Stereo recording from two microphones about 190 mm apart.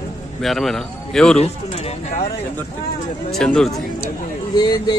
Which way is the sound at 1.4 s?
35° left (ahead or behind).